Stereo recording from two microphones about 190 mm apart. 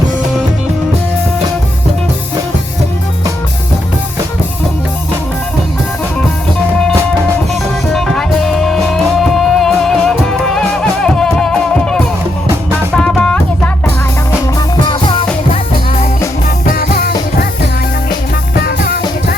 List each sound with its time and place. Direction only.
7.9 s music: centre (ahead or behind)
14.8 s music: 25° left (ahead or behind)
16.6 s music: 50° left (ahead or behind)
18.6 s music: 50° left (ahead or behind)